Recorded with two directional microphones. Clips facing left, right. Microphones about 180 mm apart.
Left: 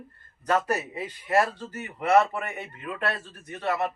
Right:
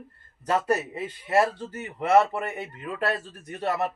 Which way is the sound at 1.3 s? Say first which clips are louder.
Right 1 dB; 25° right (ahead or behind).